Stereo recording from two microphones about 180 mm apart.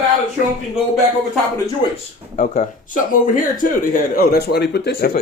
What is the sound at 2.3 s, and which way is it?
Speech, 45° left (ahead or behind).